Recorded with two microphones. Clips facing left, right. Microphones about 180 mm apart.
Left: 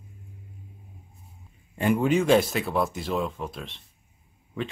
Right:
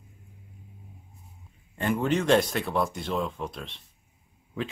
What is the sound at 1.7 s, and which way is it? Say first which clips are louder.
Speech: left 4 dB; 10° left (ahead or behind).